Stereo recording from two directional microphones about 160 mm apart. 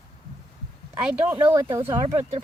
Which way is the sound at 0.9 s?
10° right (ahead or behind).